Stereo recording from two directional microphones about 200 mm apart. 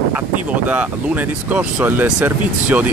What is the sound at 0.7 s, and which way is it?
Speech, 10° right (ahead or behind).